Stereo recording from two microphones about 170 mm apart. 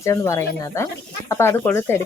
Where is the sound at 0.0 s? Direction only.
15° left (ahead or behind).